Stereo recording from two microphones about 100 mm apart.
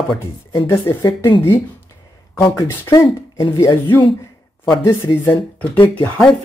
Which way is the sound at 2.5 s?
30° left (ahead or behind).